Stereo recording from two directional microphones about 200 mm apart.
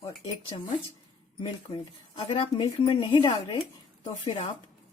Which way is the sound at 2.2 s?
25° left (ahead or behind).